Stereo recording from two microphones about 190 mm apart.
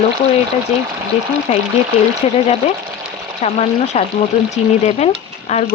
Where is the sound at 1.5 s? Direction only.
35° left (ahead or behind).